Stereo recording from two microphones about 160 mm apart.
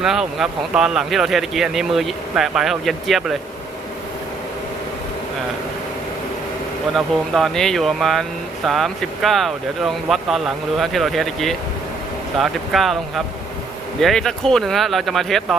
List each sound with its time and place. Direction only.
0.0 s speech: 5° right (ahead or behind)
6.9 s speech: centre (ahead or behind)